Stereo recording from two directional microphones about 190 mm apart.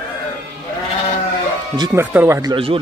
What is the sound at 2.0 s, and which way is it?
Speech, 10° right (ahead or behind).